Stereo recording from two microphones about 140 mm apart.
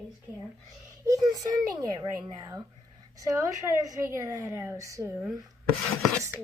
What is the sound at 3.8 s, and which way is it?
Speech, 25° right (ahead or behind).